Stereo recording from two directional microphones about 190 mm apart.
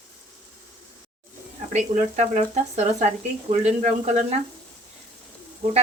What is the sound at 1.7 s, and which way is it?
Speech, 35° right (ahead or behind).